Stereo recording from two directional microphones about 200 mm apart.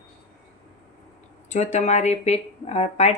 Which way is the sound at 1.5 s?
35° left (ahead or behind).